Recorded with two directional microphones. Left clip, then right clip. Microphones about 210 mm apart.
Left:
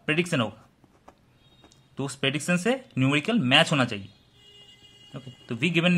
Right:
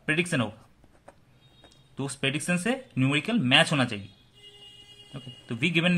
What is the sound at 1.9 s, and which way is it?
Speech, 15° left (ahead or behind).